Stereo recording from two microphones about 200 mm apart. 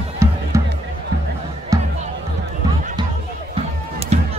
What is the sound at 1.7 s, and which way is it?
Music, 15° right (ahead or behind).